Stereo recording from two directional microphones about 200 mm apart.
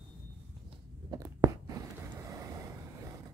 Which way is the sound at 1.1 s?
15° right (ahead or behind).